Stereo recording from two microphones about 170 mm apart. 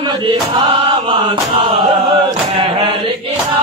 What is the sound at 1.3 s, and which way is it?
Chant, 30° right (ahead or behind).